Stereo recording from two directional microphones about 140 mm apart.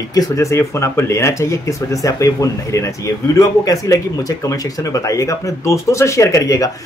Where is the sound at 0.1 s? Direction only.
25° left (ahead or behind).